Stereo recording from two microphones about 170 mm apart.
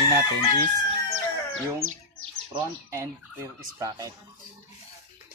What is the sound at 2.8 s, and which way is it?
Speech, 15° right (ahead or behind).